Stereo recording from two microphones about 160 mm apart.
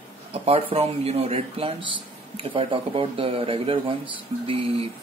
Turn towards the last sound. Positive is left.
turn(degrees=-35)  # may be behind; listen again after turning